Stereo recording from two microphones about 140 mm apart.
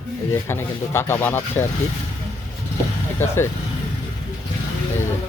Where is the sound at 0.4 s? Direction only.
15° left (ahead or behind).